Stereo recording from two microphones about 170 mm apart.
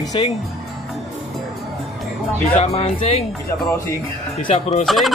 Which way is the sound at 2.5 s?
35° left (ahead or behind).